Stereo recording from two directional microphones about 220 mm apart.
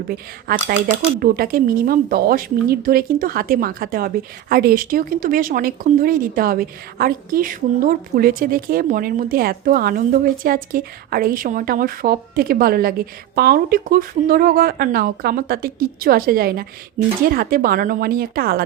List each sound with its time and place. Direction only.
0.1 s speech: 45° right (ahead or behind)